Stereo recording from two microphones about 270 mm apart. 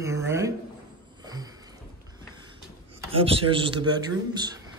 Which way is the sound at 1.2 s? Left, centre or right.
Centre.